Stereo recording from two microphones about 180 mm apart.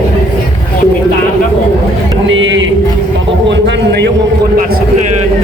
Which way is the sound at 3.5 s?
80° right.